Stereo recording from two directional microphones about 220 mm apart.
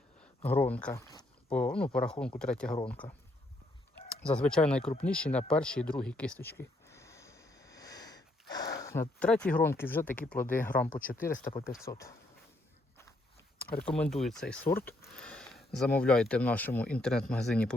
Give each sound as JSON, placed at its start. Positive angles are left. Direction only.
{"t": 0.4, "sound": "speech", "side_deg": 5}
{"t": 4.2, "sound": "speech", "side_deg": 5}
{"t": 6.4, "sound": "a sound", "side_deg": 10}
{"t": 8.8, "sound": "speech", "side_deg": 10}
{"t": 10.7, "sound": "speech", "side_deg": 40}
{"t": 11.8, "sound": "speech", "side_deg": 15}
{"t": 13.7, "sound": "speech", "side_deg": 5}